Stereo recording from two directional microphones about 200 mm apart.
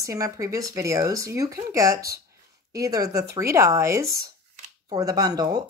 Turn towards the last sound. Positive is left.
turn(degrees=-20)  # may be behind; listen again after turning